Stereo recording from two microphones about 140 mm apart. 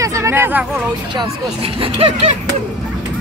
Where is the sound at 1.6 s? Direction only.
40° right (ahead or behind).